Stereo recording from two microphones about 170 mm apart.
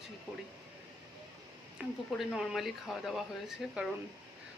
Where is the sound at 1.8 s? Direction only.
5° right (ahead or behind).